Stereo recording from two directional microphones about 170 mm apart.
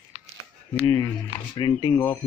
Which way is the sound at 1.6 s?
30° left (ahead or behind).